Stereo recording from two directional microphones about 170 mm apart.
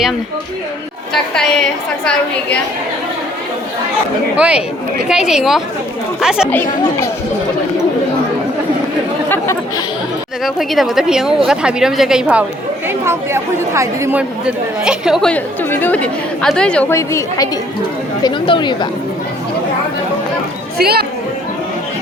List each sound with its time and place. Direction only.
1.1 s speech: 5° left (ahead or behind)
4.4 s speech: 5° right (ahead or behind)
6.5 s speech: 10° left (ahead or behind)
9.3 s chatter: 15° left (ahead or behind)
10.4 s speech: centre (ahead or behind); by 18.9 s 25° left (ahead or behind)
20.7 s speech: 65° right (ahead or behind)